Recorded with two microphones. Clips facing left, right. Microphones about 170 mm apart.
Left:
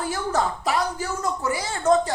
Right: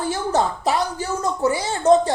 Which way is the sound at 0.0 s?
25° right (ahead or behind).